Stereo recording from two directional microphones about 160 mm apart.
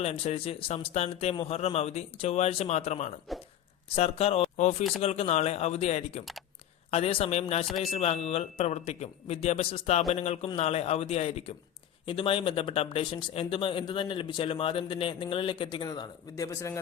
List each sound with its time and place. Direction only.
0.0 s speech: 40° left (ahead or behind)
3.3 s speech: centre (ahead or behind)
3.9 s speech: 40° left (ahead or behind)
4.8 s speech: centre (ahead or behind)
5.0 s speech: 40° left (ahead or behind); by 16.7 s 20° left (ahead or behind)